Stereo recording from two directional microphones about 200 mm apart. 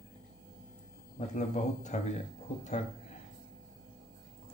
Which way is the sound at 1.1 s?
35° left (ahead or behind).